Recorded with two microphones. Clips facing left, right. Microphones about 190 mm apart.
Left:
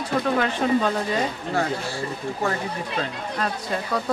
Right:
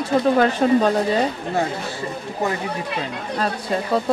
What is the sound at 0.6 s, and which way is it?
Speech, 40° right (ahead or behind).